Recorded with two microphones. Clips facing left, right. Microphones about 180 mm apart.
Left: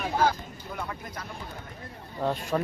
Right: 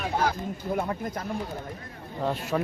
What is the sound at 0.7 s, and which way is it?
Speech, 45° right (ahead or behind).